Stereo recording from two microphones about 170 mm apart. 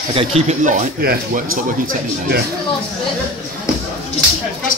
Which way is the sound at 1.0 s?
60° right (ahead or behind).